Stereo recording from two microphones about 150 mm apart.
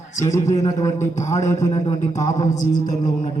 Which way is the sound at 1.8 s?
50° left (ahead or behind).